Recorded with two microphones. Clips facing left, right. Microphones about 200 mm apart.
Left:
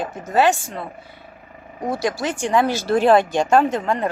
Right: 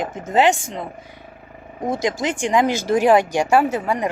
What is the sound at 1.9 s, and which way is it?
A woman's voice, 15° right (ahead or behind).